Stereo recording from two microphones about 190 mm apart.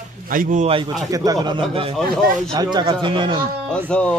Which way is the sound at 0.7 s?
25° right (ahead or behind).